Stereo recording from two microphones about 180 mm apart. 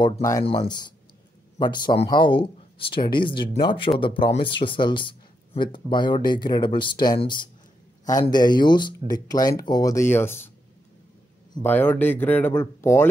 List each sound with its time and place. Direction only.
0.0 s speech: 20° left (ahead or behind)
11.6 s speech: 10° left (ahead or behind)